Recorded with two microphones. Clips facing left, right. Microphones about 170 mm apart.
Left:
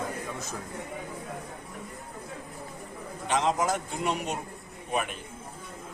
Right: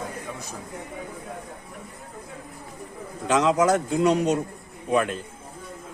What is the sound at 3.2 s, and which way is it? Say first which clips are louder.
A man's voice: right 7 dB; 90° right.